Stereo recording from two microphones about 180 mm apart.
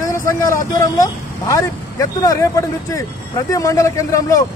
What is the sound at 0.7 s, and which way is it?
Speech, 15° left (ahead or behind).